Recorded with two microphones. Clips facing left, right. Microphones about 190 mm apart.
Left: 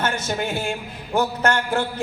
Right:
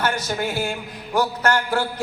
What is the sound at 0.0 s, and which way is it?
Music, 25° left (ahead or behind).